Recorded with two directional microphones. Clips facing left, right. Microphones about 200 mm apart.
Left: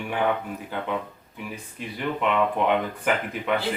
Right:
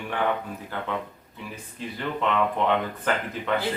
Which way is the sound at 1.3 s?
15° left (ahead or behind).